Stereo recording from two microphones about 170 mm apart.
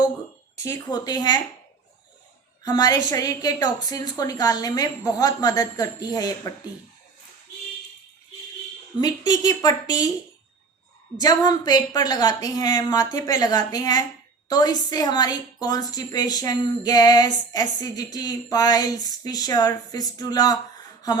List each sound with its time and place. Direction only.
0.6 s a woman's voice: 20° left (ahead or behind)
2.6 s a woman's voice: 25° left (ahead or behind)
9.0 s a woman's voice: 25° left (ahead or behind)
11.2 s a woman's voice: 25° left (ahead or behind)